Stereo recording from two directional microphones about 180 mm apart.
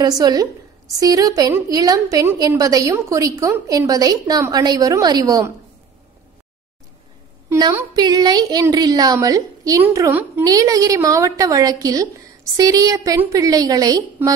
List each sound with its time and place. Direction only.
0.0 s a woman's voice: 20° right (ahead or behind)
7.4 s a woman's voice: 20° right (ahead or behind)